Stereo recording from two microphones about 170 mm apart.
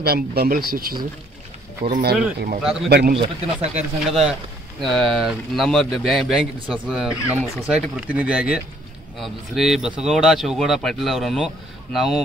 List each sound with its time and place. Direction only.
0.0 s speech: 65° right (ahead or behind)
2.6 s speech: 5° right (ahead or behind)
3.2 s speech: 40° right (ahead or behind)
4.1 s speech: centre (ahead or behind)